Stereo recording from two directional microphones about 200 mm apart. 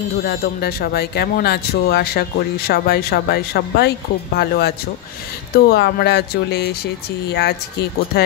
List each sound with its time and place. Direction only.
0.2 s speech: 50° left (ahead or behind)